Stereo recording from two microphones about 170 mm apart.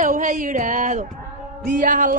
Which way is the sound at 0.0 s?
50° right (ahead or behind).